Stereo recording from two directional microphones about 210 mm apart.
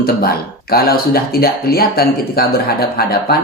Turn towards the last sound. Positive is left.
turn(degrees=45)  # may be behind; listen again after turning